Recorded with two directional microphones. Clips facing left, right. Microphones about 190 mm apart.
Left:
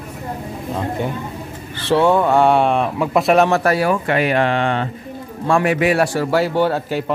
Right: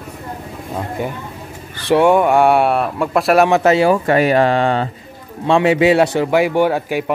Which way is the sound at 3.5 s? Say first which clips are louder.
Right 4 dB; 20° right (ahead or behind).